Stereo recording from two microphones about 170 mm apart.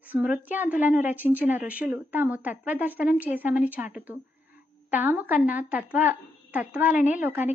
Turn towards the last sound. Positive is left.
turn(degrees=-10)  # may be behind; listen again after turning